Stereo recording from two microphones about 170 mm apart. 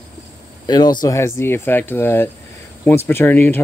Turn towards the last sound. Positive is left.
turn(degrees=10)  # may be behind; listen again after turning